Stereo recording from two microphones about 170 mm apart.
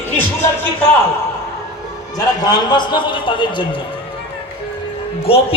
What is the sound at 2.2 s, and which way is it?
A man's voice, 25° left (ahead or behind).